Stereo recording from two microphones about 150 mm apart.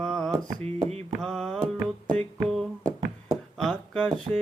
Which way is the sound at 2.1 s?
Centre (ahead or behind).